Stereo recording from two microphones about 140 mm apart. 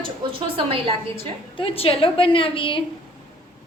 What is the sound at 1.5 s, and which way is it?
A woman's voice, 40° left (ahead or behind).